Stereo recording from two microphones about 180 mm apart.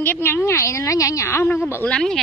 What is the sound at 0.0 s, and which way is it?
A woman's voice, 10° left (ahead or behind).